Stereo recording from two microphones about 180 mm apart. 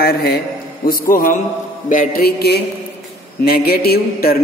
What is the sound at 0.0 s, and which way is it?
Speech, 60° left (ahead or behind).